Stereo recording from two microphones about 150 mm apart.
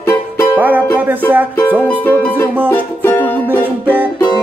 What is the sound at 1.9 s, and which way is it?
Music, 10° left (ahead or behind).